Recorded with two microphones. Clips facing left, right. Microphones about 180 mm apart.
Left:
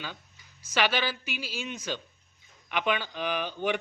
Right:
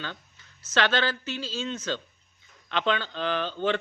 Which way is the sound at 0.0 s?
10° left (ahead or behind).